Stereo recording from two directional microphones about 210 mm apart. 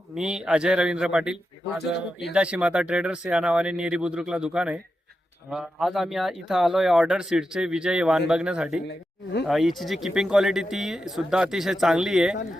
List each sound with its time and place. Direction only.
0.2 s speech: 5° right (ahead or behind)
1.8 s speech: 50° left (ahead or behind)
2.3 s speech: 5° right (ahead or behind)